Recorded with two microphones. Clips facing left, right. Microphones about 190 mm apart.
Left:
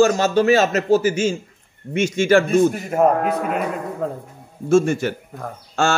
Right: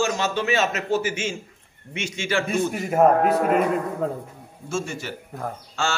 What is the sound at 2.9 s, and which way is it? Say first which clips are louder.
Speech: even; centre (ahead or behind).